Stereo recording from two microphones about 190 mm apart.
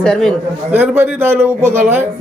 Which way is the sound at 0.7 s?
10° right (ahead or behind).